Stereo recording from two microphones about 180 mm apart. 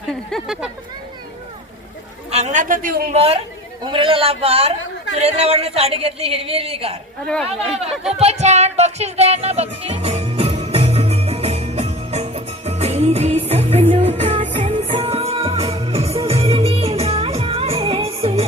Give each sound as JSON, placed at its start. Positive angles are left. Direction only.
{"t": 0.1, "sound": "speech", "side_deg": 0}
{"t": 2.3, "sound": "a man's voice", "side_deg": -40}
{"t": 3.2, "sound": "a man's voice", "side_deg": -35}
{"t": 8.2, "sound": "music", "side_deg": -35}